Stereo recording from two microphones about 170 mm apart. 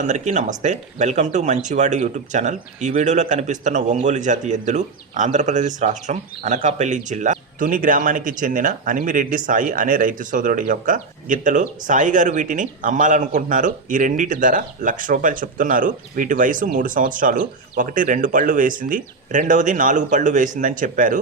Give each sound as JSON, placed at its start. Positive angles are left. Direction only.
{"t": 0.1, "sound": "speech", "side_deg": -45}